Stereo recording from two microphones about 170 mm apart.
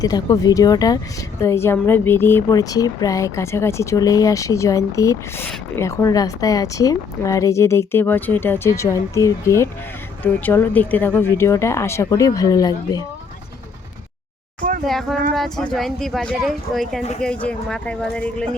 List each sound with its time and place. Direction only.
0.0 s speech: 20° left (ahead or behind)
14.8 s speech: centre (ahead or behind)